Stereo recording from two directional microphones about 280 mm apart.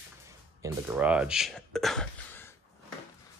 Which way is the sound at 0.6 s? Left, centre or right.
Centre.